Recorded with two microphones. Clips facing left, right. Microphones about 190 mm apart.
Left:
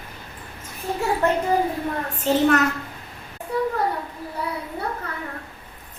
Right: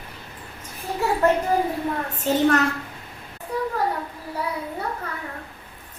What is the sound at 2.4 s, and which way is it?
Speech, 35° right (ahead or behind).